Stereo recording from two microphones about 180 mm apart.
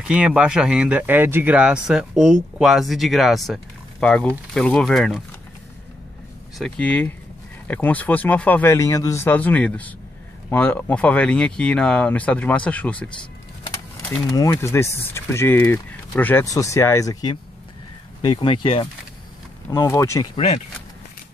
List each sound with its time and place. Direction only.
0.0 s speech: 5° right (ahead or behind)
6.6 s speech: 5° left (ahead or behind)
14.3 s speech: 20° left (ahead or behind)
19.7 s speech: 15° left (ahead or behind)
20.3 s speech: 35° left (ahead or behind)